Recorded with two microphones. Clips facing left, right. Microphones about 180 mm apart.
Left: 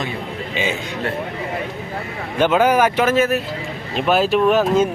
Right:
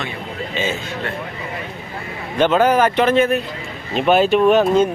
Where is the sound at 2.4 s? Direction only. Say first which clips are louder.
Right 1 dB; 10° left (ahead or behind).